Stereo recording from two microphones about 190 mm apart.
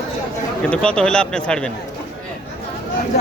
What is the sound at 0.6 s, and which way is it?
A man's voice, 5° left (ahead or behind).